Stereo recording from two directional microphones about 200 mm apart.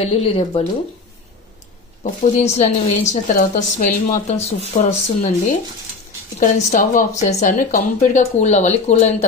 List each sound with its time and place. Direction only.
0.0 s speech: 30° left (ahead or behind)
2.0 s a woman's voice: 40° left (ahead or behind)